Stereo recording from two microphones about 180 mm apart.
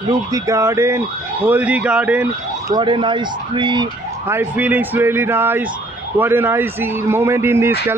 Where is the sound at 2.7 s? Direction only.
25° right (ahead or behind).